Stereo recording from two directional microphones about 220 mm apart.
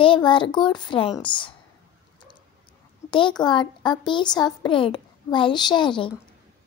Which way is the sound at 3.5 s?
20° left (ahead or behind).